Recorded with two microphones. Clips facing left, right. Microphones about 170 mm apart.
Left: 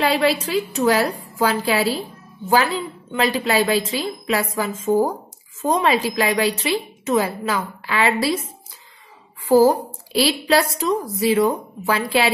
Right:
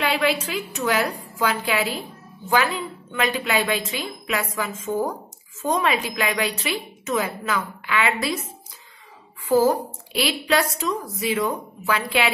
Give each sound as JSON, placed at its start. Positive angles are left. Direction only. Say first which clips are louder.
{"t": 0.0, "sound": "a woman's voice", "louder": "left 4 dB", "side_deg": 35}
{"t": 9.5, "sound": "a woman's voice", "louder": "left 4 dB", "side_deg": 35}